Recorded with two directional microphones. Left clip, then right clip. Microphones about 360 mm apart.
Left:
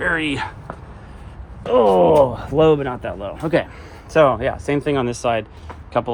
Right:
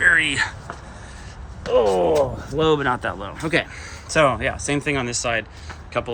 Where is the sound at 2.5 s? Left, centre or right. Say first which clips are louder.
Left 3 dB; centre.